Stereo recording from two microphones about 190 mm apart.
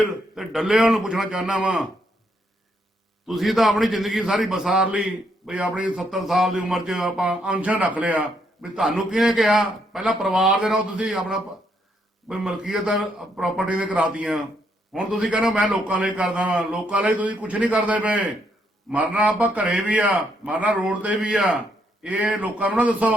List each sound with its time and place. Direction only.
0.0 s a man's voice: centre (ahead or behind)
3.2 s a man's voice: centre (ahead or behind)